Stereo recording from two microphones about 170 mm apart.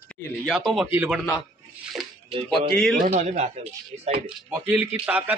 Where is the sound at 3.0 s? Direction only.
40° right (ahead or behind).